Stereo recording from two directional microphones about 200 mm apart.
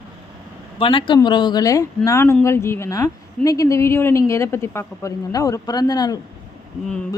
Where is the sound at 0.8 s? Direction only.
25° left (ahead or behind).